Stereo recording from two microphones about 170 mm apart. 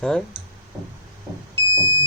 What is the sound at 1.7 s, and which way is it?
Car, 20° right (ahead or behind).